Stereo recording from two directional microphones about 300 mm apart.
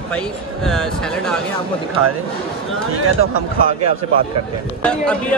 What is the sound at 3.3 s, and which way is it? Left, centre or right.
Speech, left.